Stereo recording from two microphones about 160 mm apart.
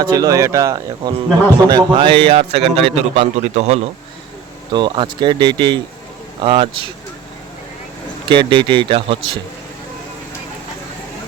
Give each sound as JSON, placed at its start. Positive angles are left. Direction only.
{"t": 0.0, "sound": "a man's voice", "side_deg": -25}
{"t": 4.7, "sound": "a man's voice", "side_deg": -30}
{"t": 8.3, "sound": "a man's voice", "side_deg": -30}